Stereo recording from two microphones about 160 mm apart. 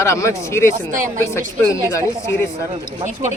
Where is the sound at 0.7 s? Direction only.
55° right (ahead or behind).